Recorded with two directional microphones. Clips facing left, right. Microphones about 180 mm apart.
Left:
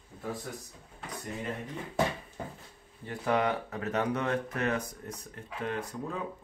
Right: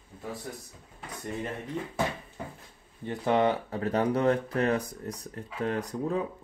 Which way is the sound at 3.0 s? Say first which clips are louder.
Right 4 dB; 25° right (ahead or behind).